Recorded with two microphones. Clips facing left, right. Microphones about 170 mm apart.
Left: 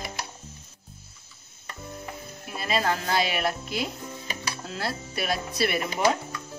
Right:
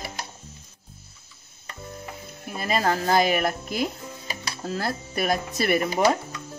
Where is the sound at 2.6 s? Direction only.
45° right (ahead or behind).